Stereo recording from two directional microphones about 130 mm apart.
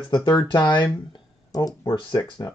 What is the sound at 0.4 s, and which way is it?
Speech, 35° left (ahead or behind).